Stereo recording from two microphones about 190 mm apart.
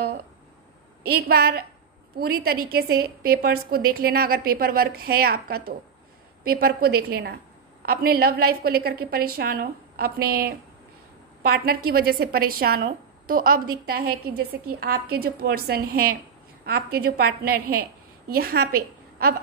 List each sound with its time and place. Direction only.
1.0 s a woman's voice: 55° right (ahead or behind)
11.5 s a woman's voice: 55° right (ahead or behind)